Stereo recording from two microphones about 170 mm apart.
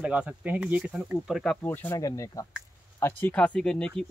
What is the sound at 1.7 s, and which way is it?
Speech, 15° left (ahead or behind).